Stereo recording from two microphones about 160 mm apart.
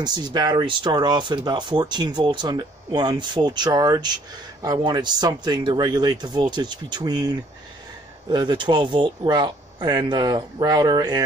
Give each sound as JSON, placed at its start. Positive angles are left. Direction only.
{"t": 0.0, "sound": "speech", "side_deg": -25}